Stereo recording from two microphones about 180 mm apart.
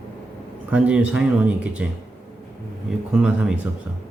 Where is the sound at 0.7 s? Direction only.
5° right (ahead or behind).